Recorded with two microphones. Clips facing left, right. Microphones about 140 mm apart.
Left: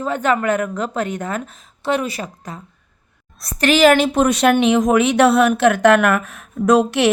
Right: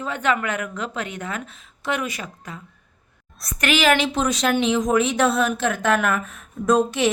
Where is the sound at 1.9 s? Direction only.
35° left (ahead or behind).